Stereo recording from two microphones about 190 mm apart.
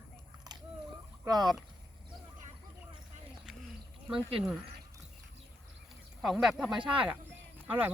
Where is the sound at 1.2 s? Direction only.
20° right (ahead or behind).